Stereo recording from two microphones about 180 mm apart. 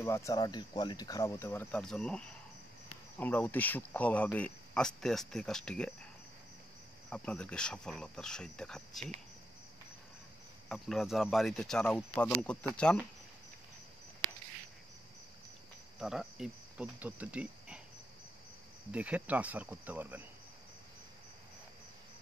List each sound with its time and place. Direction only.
0.0 s speech: 15° left (ahead or behind)
7.1 s speech: 5° left (ahead or behind)
10.7 s speech: centre (ahead or behind)
16.0 s speech: centre (ahead or behind)
18.9 s cricket: 10° right (ahead or behind)